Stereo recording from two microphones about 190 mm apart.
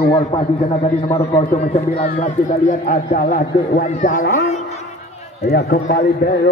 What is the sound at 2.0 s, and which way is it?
A man's voice, 40° left (ahead or behind).